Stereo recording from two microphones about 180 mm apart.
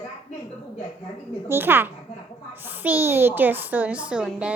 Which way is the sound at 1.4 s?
10° right (ahead or behind).